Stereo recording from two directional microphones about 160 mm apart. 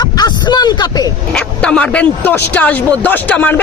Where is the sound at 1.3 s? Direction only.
5° left (ahead or behind).